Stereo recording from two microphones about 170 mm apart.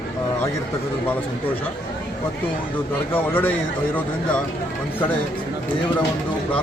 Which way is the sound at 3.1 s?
10° left (ahead or behind).